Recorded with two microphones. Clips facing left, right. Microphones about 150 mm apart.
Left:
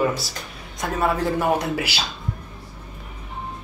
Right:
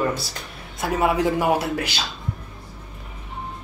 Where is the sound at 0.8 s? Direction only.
10° right (ahead or behind).